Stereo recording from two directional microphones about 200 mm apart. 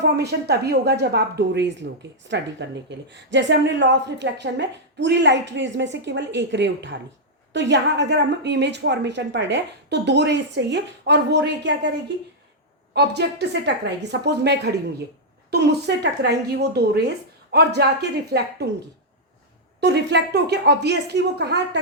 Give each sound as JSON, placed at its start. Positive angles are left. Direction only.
{"t": 0.0, "sound": "a woman's voice", "side_deg": -55}
{"t": 19.8, "sound": "a woman's voice", "side_deg": -60}